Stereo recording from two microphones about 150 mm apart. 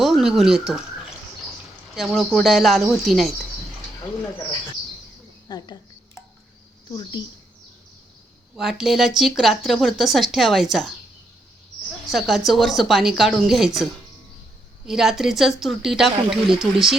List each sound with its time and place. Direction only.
0.0 s speech: centre (ahead or behind)
2.0 s speech: centre (ahead or behind)
5.5 s a sound: 25° left (ahead or behind)
6.9 s a woman's voice: 30° left (ahead or behind)
8.5 s speech: centre (ahead or behind)
12.1 s speech: centre (ahead or behind)
14.8 s speech: centre (ahead or behind)